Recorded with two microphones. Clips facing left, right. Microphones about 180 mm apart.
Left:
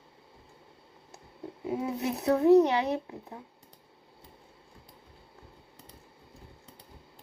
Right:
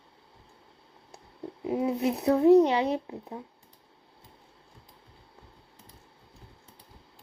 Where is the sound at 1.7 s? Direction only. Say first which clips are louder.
Right 4 dB; 25° right (ahead or behind).